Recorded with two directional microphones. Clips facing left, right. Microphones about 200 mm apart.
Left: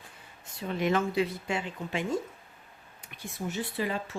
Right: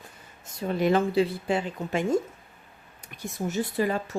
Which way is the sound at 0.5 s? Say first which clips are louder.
Right 5 dB; 40° right (ahead or behind).